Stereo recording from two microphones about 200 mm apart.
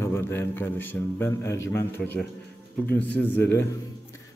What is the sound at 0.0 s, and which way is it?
A man's voice, 10° left (ahead or behind).